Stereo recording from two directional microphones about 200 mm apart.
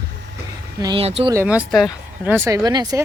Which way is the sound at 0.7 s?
25° right (ahead or behind).